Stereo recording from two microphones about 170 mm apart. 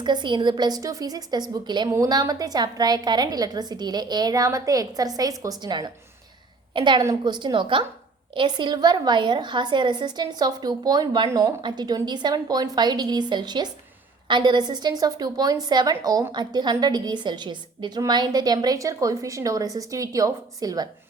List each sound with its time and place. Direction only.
0.0 s a woman's voice: 25° right (ahead or behind)